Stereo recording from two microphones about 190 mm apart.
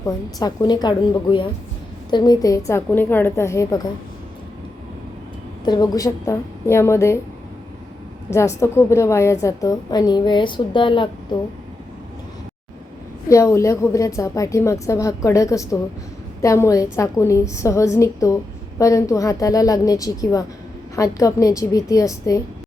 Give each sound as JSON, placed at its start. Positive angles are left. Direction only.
{"t": 0.0, "sound": "a woman's voice", "side_deg": 20}
{"t": 5.6, "sound": "a woman's voice", "side_deg": 20}
{"t": 8.3, "sound": "a woman's voice", "side_deg": 15}
{"t": 13.2, "sound": "a woman's voice", "side_deg": 15}